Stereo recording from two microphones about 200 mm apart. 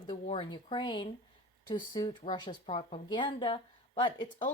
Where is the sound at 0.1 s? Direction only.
25° left (ahead or behind).